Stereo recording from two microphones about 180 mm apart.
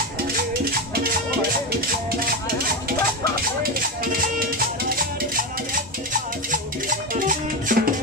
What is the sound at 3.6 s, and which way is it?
Music, 55° right (ahead or behind).